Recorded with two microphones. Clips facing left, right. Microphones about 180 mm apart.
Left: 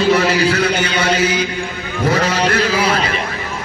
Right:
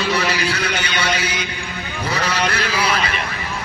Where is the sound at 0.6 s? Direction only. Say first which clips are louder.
Left 6 dB; 30° left (ahead or behind).